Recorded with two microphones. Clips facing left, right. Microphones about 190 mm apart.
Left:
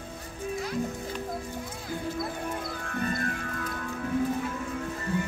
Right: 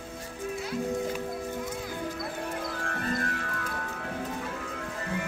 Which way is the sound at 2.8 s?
75° right (ahead or behind).